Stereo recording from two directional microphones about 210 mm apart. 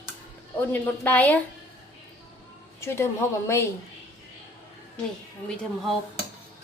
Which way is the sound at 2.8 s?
10° left (ahead or behind).